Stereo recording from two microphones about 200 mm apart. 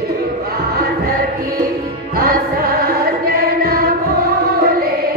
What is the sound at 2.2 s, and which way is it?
Choir, 50° right (ahead or behind).